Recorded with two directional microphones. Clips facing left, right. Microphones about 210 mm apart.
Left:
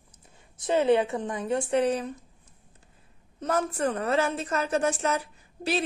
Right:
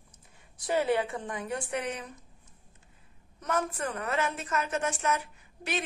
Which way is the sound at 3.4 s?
30° left (ahead or behind).